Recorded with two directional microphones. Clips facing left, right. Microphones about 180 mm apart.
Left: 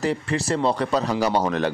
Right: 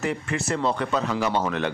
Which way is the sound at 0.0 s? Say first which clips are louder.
Left 3 dB; 35° left (ahead or behind).